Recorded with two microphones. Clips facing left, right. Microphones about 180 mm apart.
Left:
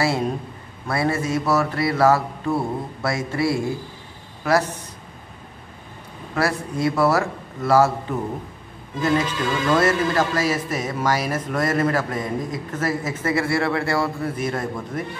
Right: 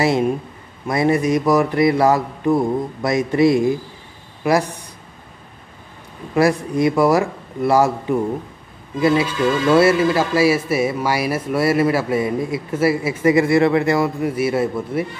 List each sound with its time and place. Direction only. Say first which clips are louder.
0.8 s speech: right 6 dB; 15° right (ahead or behind)
6.4 s speech: right 7 dB; 15° right (ahead or behind)